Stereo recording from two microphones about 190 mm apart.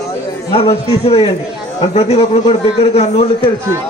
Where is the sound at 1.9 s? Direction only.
35° left (ahead or behind).